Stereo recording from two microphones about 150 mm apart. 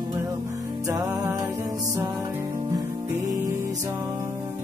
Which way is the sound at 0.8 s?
20° right (ahead or behind).